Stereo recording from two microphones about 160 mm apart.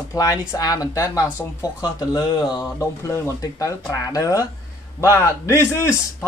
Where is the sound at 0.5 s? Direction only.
25° left (ahead or behind).